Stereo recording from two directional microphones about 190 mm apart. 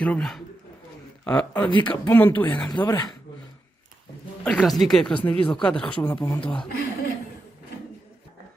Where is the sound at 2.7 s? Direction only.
20° left (ahead or behind).